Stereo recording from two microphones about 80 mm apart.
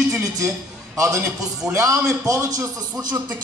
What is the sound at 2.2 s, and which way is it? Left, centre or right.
Speech, right.